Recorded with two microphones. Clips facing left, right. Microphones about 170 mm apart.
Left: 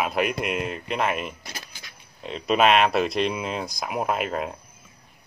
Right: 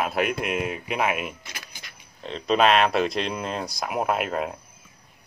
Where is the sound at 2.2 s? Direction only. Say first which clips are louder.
Even; 5° left (ahead or behind).